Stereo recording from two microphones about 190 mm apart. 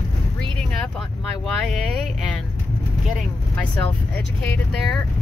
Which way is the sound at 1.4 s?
Centre (ahead or behind).